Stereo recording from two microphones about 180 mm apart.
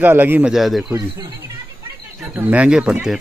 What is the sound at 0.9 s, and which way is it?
Speech, 20° right (ahead or behind).